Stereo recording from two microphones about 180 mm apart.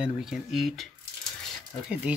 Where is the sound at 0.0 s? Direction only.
Centre (ahead or behind).